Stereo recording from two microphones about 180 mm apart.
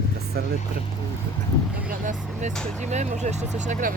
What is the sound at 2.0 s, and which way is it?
Speech, 45° right (ahead or behind).